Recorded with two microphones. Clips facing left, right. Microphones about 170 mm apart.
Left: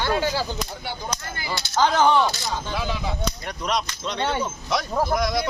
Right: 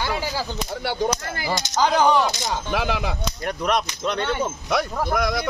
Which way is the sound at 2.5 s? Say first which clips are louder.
Right 3 dB; 85° right.